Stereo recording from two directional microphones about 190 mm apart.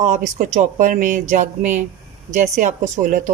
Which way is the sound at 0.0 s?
45° right (ahead or behind).